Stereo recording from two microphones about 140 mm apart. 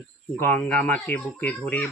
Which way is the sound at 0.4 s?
10° left (ahead or behind).